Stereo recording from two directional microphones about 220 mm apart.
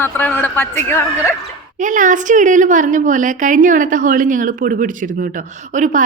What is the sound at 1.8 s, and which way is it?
A woman's voice, 35° right (ahead or behind).